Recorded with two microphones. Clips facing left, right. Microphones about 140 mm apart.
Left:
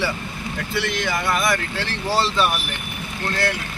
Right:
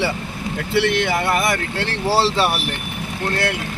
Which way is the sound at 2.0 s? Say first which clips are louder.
Right 3 dB; 30° right (ahead or behind).